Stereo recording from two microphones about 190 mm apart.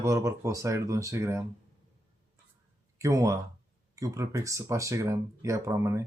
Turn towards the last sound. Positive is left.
turn(degrees=-15)  # may be behind; listen again after turning